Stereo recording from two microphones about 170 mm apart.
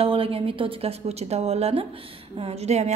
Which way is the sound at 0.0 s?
35° right (ahead or behind).